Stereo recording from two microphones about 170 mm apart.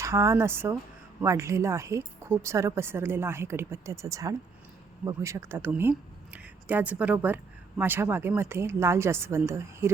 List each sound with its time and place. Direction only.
0.0 s speech: 15° right (ahead or behind)